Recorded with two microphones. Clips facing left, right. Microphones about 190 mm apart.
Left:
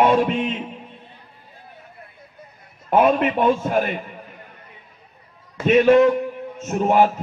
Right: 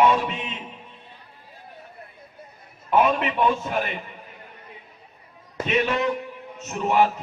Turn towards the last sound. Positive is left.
turn(degrees=50)  # may be behind; listen again after turning